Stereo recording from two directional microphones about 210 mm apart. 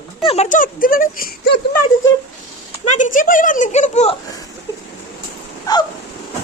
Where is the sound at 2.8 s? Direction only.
35° left (ahead or behind).